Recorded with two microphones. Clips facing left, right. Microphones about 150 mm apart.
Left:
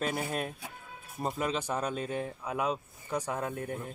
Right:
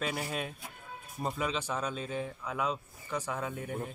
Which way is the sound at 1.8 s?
50° left (ahead or behind).